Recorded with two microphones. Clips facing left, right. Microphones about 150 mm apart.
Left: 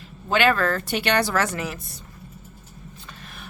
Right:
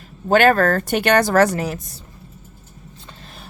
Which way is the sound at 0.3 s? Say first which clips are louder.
Right 6 dB; 45° right (ahead or behind).